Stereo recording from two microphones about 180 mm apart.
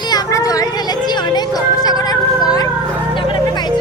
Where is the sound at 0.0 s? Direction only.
20° left (ahead or behind).